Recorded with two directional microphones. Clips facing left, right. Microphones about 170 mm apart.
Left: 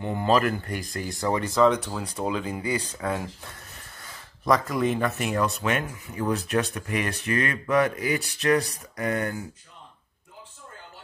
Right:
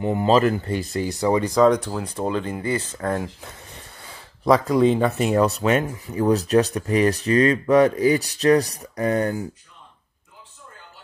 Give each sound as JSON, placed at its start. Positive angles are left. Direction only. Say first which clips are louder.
{"t": 0.0, "sound": "speech", "louder": "right 5 dB", "side_deg": -20}
{"t": 2.2, "sound": "speech", "louder": "right 3 dB", "side_deg": 5}
{"t": 3.7, "sound": "speech", "louder": "right 4 dB", "side_deg": -25}